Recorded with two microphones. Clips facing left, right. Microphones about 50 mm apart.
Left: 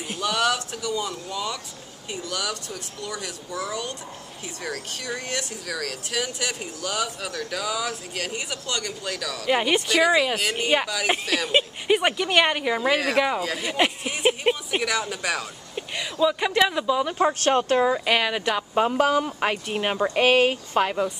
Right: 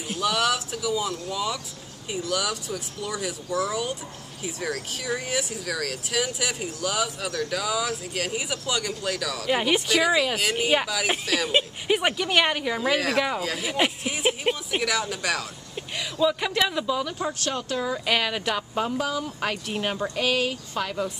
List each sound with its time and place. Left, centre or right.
0.1 s speech: centre
17.0 s speech: left
18.0 s speech: centre
18.9 s speech: left
19.4 s speech: left